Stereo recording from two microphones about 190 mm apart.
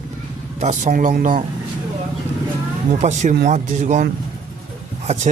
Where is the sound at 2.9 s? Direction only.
40° right (ahead or behind).